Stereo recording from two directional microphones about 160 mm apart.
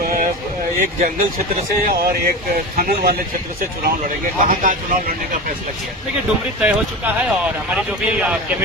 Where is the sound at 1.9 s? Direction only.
65° right (ahead or behind).